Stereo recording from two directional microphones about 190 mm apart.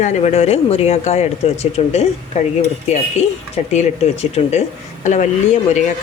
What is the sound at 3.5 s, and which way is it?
Speech, 35° left (ahead or behind).